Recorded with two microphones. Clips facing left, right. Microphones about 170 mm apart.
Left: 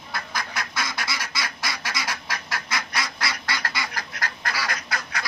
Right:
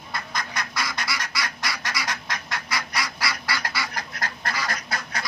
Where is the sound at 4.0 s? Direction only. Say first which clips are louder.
Even; 25° right (ahead or behind).